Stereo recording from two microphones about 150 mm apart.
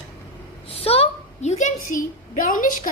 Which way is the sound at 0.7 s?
40° left (ahead or behind).